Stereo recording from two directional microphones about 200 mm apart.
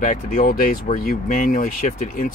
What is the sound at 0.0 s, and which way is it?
Speech, 45° left (ahead or behind).